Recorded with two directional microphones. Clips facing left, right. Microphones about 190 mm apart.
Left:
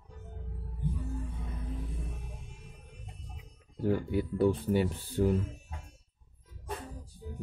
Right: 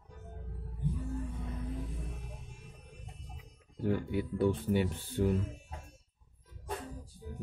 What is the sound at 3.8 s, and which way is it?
Speech, 40° left (ahead or behind).